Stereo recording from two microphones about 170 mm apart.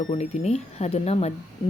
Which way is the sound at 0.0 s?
40° left (ahead or behind).